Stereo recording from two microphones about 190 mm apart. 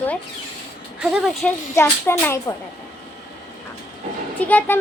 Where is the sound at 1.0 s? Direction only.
5° right (ahead or behind).